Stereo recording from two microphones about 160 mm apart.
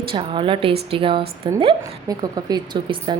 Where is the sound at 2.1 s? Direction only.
25° right (ahead or behind).